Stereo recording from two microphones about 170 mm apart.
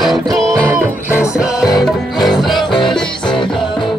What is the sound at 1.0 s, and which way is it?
Music, 15° left (ahead or behind).